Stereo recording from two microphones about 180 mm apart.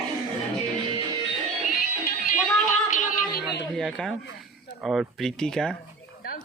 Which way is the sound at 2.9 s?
45° left (ahead or behind).